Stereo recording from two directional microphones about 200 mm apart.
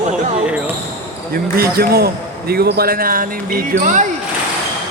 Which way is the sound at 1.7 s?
50° right (ahead or behind).